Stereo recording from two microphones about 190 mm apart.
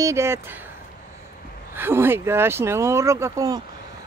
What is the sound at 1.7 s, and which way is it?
Speech, 10° right (ahead or behind).